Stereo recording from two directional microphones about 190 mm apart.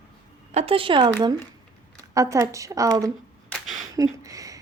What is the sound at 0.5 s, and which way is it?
Speech, 30° right (ahead or behind).